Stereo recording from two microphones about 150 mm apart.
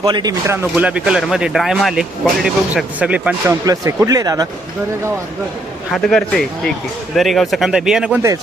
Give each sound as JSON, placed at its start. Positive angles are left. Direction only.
{"t": 0.0, "sound": "speech", "side_deg": -30}
{"t": 5.9, "sound": "speech", "side_deg": 0}